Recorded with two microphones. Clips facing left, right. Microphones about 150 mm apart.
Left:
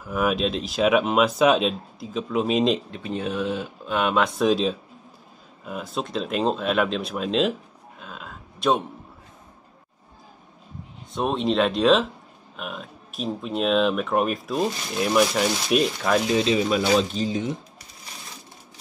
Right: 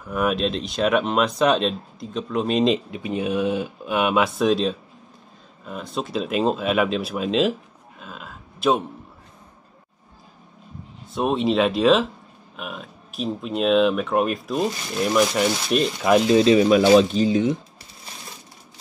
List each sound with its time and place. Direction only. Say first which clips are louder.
0.0 s speech: right 1 dB; centre (ahead or behind)
2.9 s speech: right 4 dB; 10° right (ahead or behind)
4.4 s speech: right 1 dB; centre (ahead or behind)
8.0 s a sound: right 1 dB; centre (ahead or behind)
11.1 s speech: right 2 dB; 5° right (ahead or behind)
16.2 s speech: right 6 dB; 30° right (ahead or behind)
16.4 s speech: right 6 dB; 65° right (ahead or behind)